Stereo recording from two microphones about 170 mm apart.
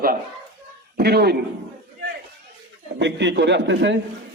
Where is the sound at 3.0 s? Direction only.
90° right.